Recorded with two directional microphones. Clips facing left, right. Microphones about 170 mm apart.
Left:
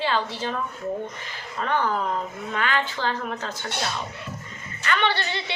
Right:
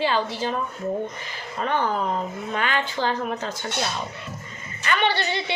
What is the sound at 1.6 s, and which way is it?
Speech, 20° right (ahead or behind).